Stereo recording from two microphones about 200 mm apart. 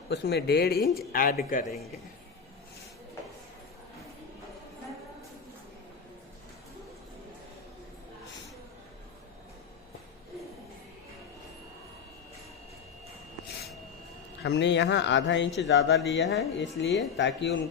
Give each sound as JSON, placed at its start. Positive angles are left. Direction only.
{"t": 0.1, "sound": "a man's voice", "side_deg": 60}
{"t": 1.6, "sound": "a man's voice", "side_deg": 0}
{"t": 14.4, "sound": "speech", "side_deg": 60}